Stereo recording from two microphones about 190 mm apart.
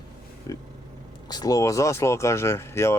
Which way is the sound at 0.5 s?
20° left (ahead or behind).